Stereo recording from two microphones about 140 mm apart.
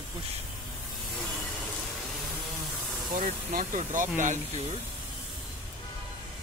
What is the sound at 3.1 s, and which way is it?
Speech, 75° right (ahead or behind).